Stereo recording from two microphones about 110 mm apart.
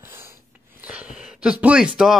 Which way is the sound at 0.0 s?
20° right (ahead or behind).